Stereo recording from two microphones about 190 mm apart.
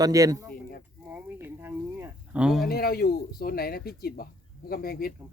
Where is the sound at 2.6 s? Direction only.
55° left (ahead or behind).